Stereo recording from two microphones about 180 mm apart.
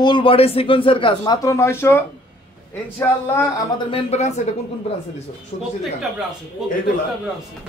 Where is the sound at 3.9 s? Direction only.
35° left (ahead or behind).